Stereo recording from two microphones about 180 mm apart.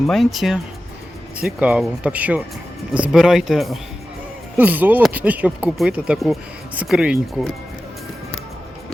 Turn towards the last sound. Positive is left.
turn(degrees=-5)  # may be behind; listen again after turning